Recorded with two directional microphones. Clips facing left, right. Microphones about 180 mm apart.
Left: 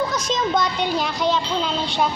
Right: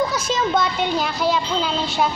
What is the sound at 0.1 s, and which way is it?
Speech, 5° right (ahead or behind).